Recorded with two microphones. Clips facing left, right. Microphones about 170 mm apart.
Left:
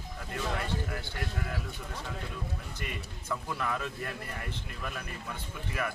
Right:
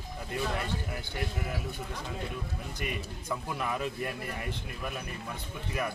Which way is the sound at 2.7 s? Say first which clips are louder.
Right 4 dB; 15° right (ahead or behind).